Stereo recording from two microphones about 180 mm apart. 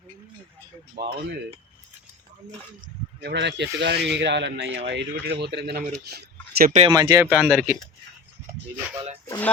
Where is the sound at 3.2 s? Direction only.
70° right (ahead or behind).